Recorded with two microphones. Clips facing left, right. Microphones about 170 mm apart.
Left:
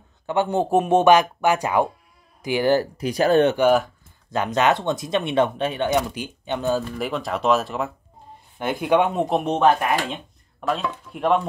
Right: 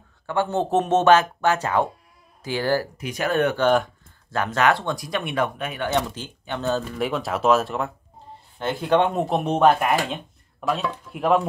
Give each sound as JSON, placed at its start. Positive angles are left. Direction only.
{"t": 0.3, "sound": "a man's voice", "side_deg": 15}
{"t": 3.0, "sound": "speech", "side_deg": 35}
{"t": 3.5, "sound": "a man's voice", "side_deg": 5}
{"t": 4.3, "sound": "speech", "side_deg": 20}
{"t": 5.9, "sound": "a man's voice", "side_deg": 10}
{"t": 7.0, "sound": "speech", "side_deg": 0}
{"t": 8.5, "sound": "a man's voice", "side_deg": 15}
{"t": 9.3, "sound": "speech", "side_deg": 0}